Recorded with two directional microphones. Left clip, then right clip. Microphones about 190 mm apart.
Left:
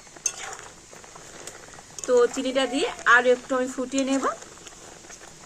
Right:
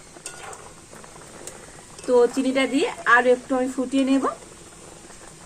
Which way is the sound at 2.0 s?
20° right (ahead or behind).